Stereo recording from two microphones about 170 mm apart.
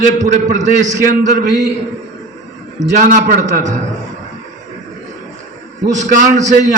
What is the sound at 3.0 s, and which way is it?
Speech, 45° right (ahead or behind).